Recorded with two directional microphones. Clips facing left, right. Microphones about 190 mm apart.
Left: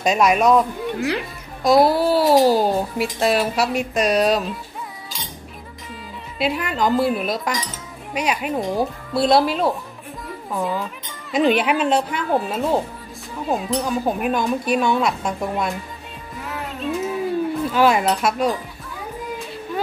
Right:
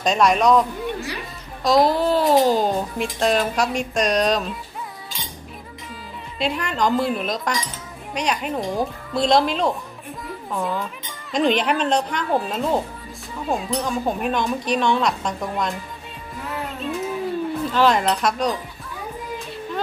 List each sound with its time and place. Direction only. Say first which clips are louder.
0.0 s speech: left 1 dB; 10° left (ahead or behind)
6.3 s speech: left 2 dB; 5° left (ahead or behind)
10.2 s music: left 1 dB; centre (ahead or behind)
11.3 s speech: left 2 dB; 5° left (ahead or behind)
16.6 s a sound: left 4 dB; centre (ahead or behind)
17.6 s speech: left 1 dB; 5° left (ahead or behind)